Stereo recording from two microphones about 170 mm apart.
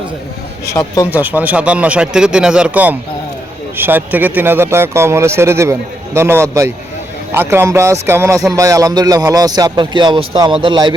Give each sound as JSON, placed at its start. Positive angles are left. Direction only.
{"t": 0.6, "sound": "speech", "side_deg": 20}
{"t": 1.1, "sound": "a man's voice", "side_deg": -10}